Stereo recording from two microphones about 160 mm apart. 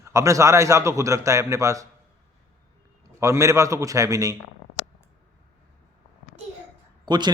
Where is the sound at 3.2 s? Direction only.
20° right (ahead or behind).